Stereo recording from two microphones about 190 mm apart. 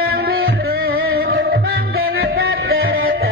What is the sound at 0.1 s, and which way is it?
Music, 55° right (ahead or behind).